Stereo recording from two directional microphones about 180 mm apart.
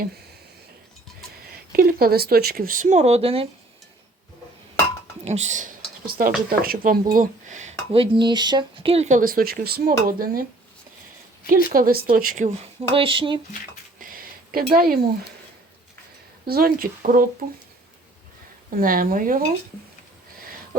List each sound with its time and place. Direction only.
1.7 s speech: 55° right (ahead or behind); by 3.5 s 35° right (ahead or behind)
5.2 s speech: 40° right (ahead or behind); by 10.4 s 55° right (ahead or behind)
11.4 s speech: 55° right (ahead or behind); by 13.4 s 30° right (ahead or behind)
14.0 s a sound: 55° right (ahead or behind)
14.7 s speech: 55° right (ahead or behind)
16.5 s speech: 55° right (ahead or behind)
18.8 s speech: 50° right (ahead or behind)